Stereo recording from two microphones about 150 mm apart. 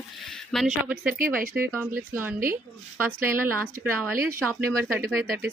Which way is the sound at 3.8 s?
10° right (ahead or behind).